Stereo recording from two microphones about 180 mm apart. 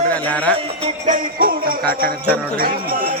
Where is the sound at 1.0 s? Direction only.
50° right (ahead or behind).